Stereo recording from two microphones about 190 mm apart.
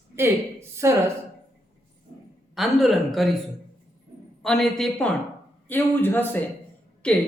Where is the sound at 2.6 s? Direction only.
Centre (ahead or behind).